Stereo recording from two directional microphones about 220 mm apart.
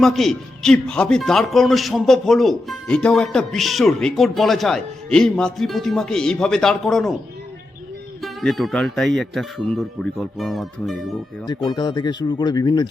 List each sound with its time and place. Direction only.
0.0 s a man's voice: centre (ahead or behind)
8.2 s a man's voice: centre (ahead or behind)
11.4 s speech: 20° left (ahead or behind)